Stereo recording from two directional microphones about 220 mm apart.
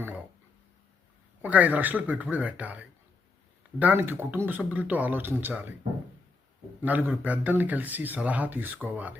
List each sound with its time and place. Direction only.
1.4 s speech: 5° right (ahead or behind)
6.8 s speech: 5° right (ahead or behind)